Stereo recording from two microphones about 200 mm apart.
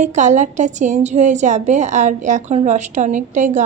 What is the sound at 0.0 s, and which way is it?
A woman's voice, 35° right (ahead or behind).